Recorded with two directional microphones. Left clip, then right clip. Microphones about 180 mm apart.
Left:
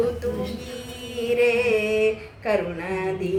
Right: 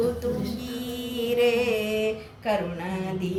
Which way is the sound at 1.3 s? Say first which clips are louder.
Left 3 dB; 55° left (ahead or behind).